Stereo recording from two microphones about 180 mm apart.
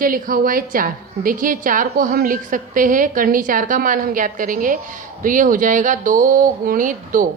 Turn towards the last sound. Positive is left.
turn(degrees=-50)  # may be behind; listen again after turning